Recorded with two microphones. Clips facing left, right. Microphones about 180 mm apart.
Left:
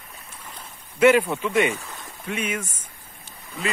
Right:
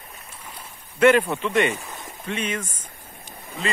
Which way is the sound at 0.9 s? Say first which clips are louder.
Even; 10° left (ahead or behind).